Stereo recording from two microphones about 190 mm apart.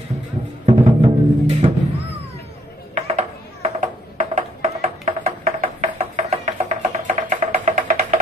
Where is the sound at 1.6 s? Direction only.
25° right (ahead or behind).